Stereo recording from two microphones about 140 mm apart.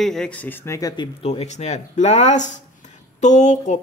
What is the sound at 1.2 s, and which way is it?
Speech, 50° left (ahead or behind).